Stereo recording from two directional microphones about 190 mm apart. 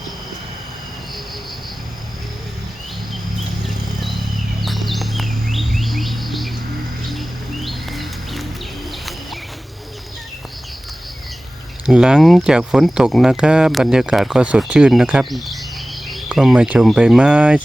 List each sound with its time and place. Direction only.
4.6 s bird: centre (ahead or behind)
11.9 s speech: 5° right (ahead or behind)